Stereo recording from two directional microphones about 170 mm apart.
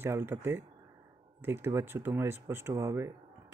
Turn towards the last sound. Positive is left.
turn(degrees=-20)  # may be behind; listen again after turning